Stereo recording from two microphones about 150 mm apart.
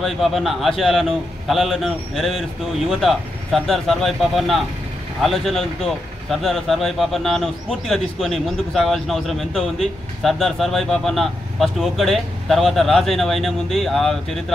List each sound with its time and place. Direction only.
0.0 s speech: centre (ahead or behind)